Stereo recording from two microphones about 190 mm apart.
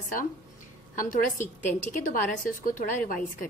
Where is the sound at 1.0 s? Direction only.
45° left (ahead or behind).